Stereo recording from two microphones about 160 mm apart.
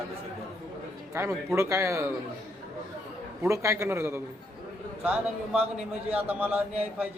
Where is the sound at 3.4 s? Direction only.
20° right (ahead or behind).